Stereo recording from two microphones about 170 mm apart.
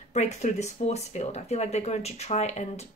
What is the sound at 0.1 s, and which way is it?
Speech, 45° left (ahead or behind).